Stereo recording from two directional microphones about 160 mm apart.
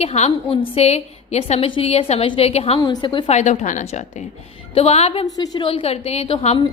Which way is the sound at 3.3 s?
45° left (ahead or behind).